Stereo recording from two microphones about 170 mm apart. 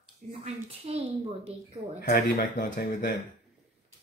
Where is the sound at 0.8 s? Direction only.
35° right (ahead or behind).